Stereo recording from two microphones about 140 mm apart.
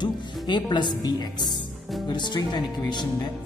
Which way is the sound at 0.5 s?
35° left (ahead or behind).